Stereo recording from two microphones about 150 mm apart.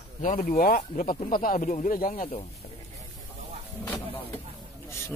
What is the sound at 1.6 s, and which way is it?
Speech, 55° left (ahead or behind).